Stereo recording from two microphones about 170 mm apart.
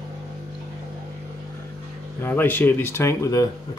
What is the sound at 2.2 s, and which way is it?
Speech, 10° left (ahead or behind).